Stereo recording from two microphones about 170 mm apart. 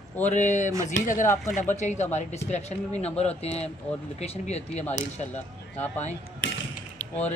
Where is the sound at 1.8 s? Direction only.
45° left (ahead or behind).